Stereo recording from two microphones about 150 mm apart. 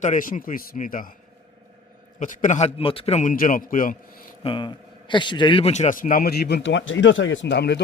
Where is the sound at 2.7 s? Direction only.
40° left (ahead or behind); by 3.9 s 65° left (ahead or behind).